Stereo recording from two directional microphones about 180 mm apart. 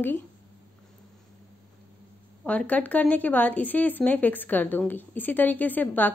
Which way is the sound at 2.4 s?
10° left (ahead or behind).